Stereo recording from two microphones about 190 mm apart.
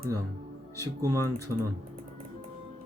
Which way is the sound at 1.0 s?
15° right (ahead or behind).